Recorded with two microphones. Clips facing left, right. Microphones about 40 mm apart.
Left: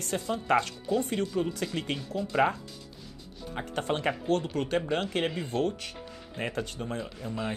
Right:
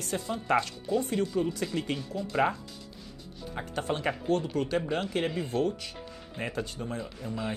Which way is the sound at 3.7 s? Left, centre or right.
Left.